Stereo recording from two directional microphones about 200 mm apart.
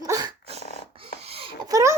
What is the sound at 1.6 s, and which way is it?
Speech, 15° right (ahead or behind).